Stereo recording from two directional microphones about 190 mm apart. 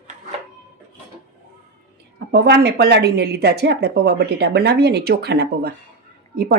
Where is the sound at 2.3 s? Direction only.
65° right (ahead or behind).